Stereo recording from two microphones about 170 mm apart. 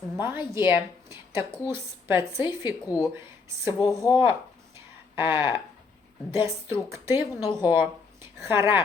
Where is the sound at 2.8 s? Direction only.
20° left (ahead or behind).